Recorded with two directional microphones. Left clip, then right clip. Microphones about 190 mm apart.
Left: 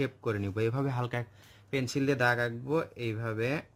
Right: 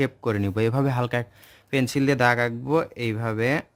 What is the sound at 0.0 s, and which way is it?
A man's voice, 40° right (ahead or behind).